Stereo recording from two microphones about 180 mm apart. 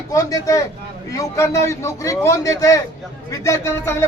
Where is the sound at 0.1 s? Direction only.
20° left (ahead or behind).